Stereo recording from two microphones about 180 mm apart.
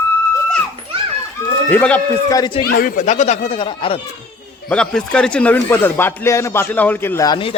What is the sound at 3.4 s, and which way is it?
Speech, 30° left (ahead or behind).